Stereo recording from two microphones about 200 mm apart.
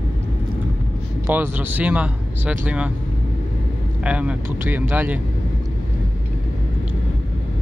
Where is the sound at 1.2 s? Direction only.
10° right (ahead or behind).